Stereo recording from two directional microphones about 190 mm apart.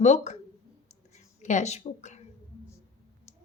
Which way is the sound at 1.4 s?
40° left (ahead or behind).